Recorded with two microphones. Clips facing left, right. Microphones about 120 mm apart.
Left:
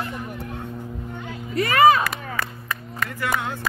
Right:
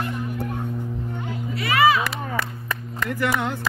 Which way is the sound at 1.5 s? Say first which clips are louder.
Left 3 dB; 45° left (ahead or behind).